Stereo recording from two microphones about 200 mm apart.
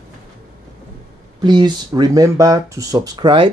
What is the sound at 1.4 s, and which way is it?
Speech, 20° right (ahead or behind).